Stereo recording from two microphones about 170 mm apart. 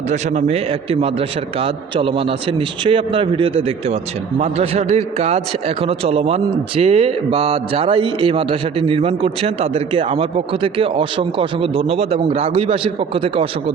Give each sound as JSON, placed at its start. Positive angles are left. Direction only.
{"t": 0.1, "sound": "a man's voice", "side_deg": -40}